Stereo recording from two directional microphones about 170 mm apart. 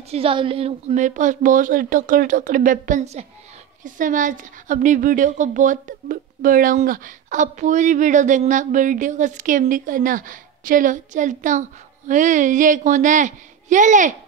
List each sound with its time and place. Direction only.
0.1 s a woman's voice: 30° right (ahead or behind); by 14.1 s 50° right (ahead or behind)